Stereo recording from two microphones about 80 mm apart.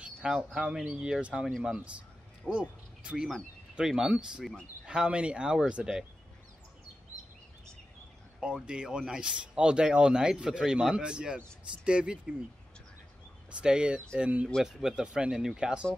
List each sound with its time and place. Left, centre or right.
0.0 s speech: centre
2.5 s speech: centre
8.4 s speech: centre
13.5 s speech: centre